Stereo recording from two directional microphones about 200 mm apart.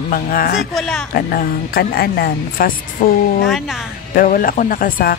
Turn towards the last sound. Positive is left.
turn(degrees=45)  # may be behind; listen again after turning